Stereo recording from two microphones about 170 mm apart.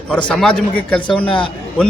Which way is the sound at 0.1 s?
5° left (ahead or behind).